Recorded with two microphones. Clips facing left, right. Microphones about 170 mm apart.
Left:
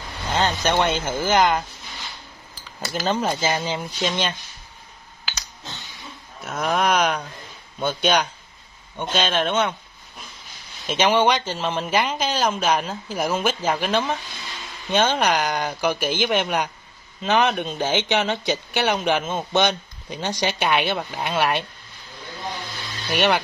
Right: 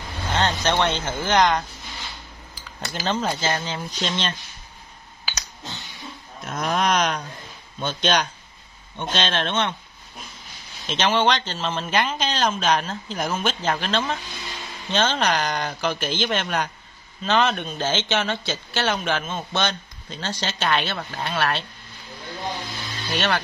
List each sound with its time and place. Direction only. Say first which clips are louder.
0.3 s speech: left 1 dB; 10° left (ahead or behind)
2.8 s speech: left 2 dB; 5° left (ahead or behind)
6.4 s speech: left 1 dB; 5° left (ahead or behind)
10.9 s speech: left 2 dB; 10° left (ahead or behind)
23.0 s speech: left 4 dB; 15° left (ahead or behind)